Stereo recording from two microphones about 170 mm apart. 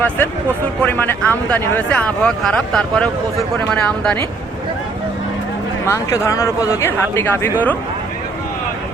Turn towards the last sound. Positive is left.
turn(degrees=10)  # may be behind; listen again after turning